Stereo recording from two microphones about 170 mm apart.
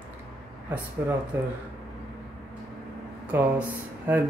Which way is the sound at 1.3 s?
10° right (ahead or behind).